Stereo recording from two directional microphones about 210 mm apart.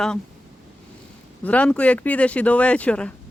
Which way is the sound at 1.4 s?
5° left (ahead or behind).